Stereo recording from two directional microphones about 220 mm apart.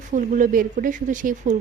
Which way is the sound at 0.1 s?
35° right (ahead or behind).